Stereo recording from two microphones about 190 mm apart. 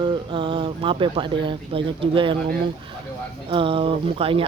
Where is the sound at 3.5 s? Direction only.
30° right (ahead or behind).